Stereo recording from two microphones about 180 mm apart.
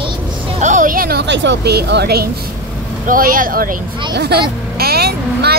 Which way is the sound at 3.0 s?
50° right (ahead or behind).